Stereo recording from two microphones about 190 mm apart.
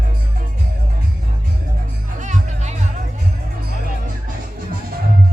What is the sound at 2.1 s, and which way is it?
Music, 40° right (ahead or behind).